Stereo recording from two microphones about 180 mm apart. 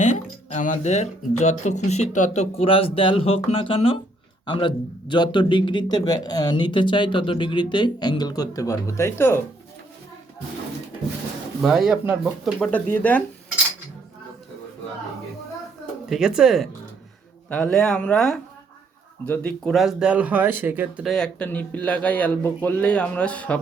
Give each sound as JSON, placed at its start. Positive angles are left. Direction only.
{"t": 0.0, "sound": "speech", "side_deg": 40}
{"t": 11.6, "sound": "speech", "side_deg": 0}
{"t": 12.5, "sound": "speech", "side_deg": 10}
{"t": 16.0, "sound": "speech", "side_deg": 0}
{"t": 21.1, "sound": "speech", "side_deg": 5}